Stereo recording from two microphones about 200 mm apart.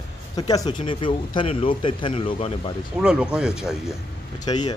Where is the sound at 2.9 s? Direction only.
5° right (ahead or behind).